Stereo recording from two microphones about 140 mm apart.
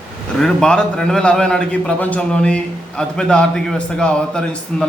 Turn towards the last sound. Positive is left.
turn(degrees=5)  # may be behind; listen again after turning